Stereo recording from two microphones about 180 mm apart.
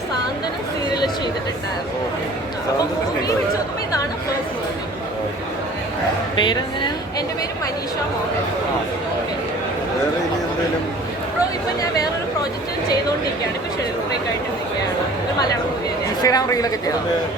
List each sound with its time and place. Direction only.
16.2 s speech: 20° left (ahead or behind)